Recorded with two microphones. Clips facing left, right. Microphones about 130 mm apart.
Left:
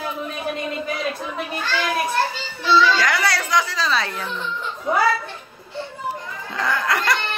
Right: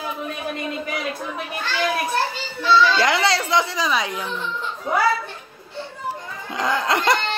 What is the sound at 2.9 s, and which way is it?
Speech, 25° right (ahead or behind).